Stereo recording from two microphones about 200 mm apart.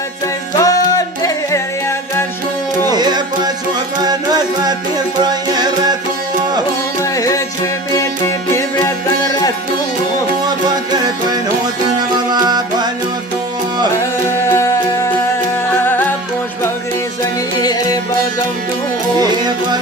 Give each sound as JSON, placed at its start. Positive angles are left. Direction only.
{"t": 0.6, "sound": "music", "side_deg": 15}
{"t": 2.8, "sound": "music", "side_deg": -20}
{"t": 7.0, "sound": "music", "side_deg": 15}
{"t": 8.5, "sound": "music", "side_deg": 15}
{"t": 10.9, "sound": "music", "side_deg": -20}
{"t": 14.0, "sound": "music", "side_deg": 15}
{"t": 15.8, "sound": "music", "side_deg": 10}
{"t": 17.6, "sound": "music", "side_deg": 20}
{"t": 19.2, "sound": "music", "side_deg": -20}